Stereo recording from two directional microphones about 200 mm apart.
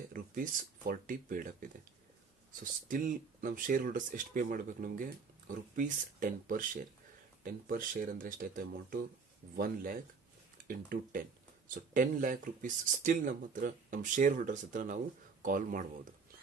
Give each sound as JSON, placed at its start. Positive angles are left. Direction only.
{"t": 0.1, "sound": "speech", "side_deg": -45}